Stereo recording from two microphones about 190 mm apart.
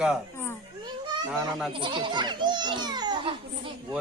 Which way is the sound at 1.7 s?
25° right (ahead or behind).